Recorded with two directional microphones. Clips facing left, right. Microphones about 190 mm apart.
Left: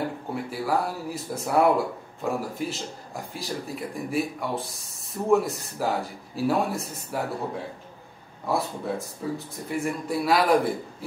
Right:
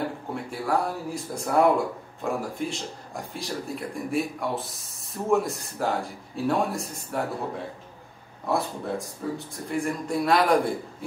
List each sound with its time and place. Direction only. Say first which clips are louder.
0.3 s speech: even; 5° left (ahead or behind)